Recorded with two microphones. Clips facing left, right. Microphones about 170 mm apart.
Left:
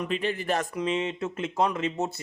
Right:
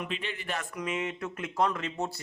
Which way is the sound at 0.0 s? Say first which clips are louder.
Left 8 dB; 40° left (ahead or behind).